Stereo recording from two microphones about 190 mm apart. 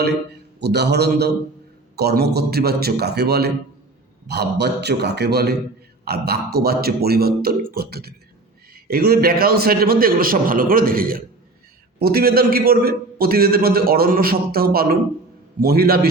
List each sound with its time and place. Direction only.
0.6 s a man's voice: 60° right (ahead or behind)